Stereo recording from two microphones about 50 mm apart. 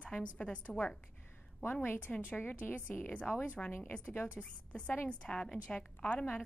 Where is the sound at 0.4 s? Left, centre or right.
Left.